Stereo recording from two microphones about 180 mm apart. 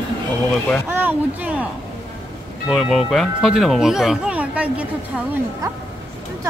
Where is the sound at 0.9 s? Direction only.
10° right (ahead or behind).